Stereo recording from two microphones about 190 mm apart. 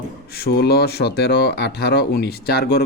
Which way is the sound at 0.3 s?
55° left (ahead or behind).